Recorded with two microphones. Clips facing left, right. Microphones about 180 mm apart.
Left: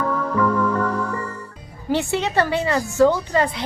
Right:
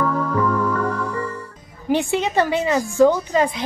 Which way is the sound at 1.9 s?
15° right (ahead or behind).